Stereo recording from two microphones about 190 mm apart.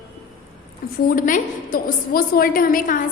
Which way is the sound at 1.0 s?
45° left (ahead or behind).